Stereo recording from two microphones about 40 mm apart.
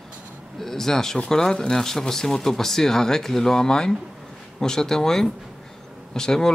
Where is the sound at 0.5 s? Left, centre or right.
Centre.